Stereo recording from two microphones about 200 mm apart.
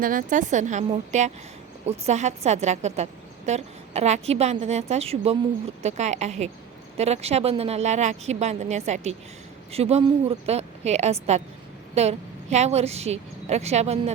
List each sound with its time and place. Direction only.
0.0 s a woman's voice: 40° right (ahead or behind)